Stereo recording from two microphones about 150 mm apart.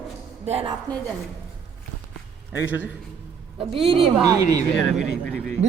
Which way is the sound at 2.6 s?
10° right (ahead or behind).